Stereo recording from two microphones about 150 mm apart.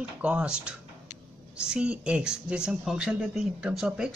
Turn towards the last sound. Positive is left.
turn(degrees=-5)  # may be behind; listen again after turning